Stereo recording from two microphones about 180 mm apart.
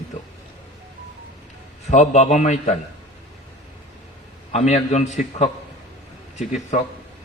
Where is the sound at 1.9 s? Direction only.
40° left (ahead or behind).